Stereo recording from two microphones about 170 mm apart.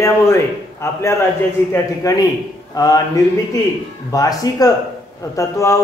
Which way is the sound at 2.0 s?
20° left (ahead or behind).